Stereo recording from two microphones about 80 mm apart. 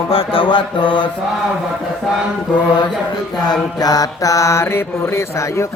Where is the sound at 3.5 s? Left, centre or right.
Left.